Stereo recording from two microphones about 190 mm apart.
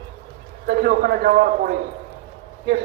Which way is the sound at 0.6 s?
50° right (ahead or behind).